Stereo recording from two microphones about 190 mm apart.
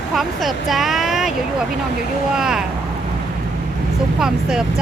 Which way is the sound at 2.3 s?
5° right (ahead or behind).